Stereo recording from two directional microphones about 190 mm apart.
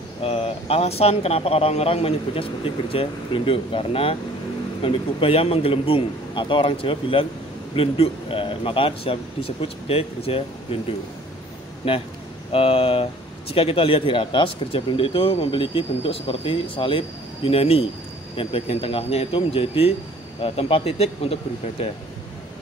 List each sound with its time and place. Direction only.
0.2 s speech: 30° left (ahead or behind)
11.8 s speech: 30° left (ahead or behind)